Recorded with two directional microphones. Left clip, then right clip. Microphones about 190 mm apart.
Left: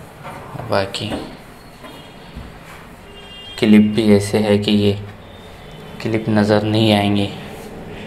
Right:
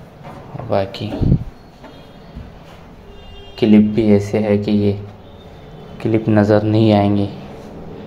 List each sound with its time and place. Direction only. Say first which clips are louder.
0.7 s speech: even; 30° right (ahead or behind)
3.5 s speech: right 1 dB; 25° right (ahead or behind)
6.0 s speech: right 2 dB; 35° right (ahead or behind)